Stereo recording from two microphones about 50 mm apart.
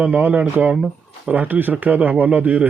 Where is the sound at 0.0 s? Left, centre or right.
Right.